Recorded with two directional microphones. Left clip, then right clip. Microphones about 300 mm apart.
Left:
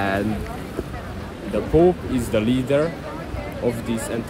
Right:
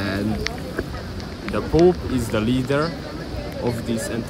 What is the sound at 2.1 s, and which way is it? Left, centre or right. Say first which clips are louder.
Speech: left 1 dB; centre.